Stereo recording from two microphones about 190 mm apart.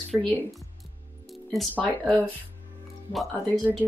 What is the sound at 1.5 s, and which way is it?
Speech, centre (ahead or behind).